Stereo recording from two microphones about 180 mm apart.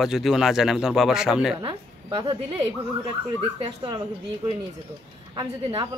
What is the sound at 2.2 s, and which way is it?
Speech, 20° right (ahead or behind).